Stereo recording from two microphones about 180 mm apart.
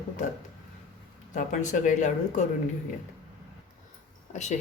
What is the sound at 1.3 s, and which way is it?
A woman's voice, 45° left (ahead or behind).